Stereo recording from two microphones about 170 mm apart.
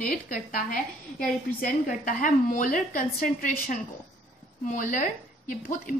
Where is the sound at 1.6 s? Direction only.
50° left (ahead or behind).